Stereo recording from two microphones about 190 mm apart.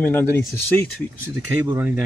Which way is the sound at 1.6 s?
15° right (ahead or behind).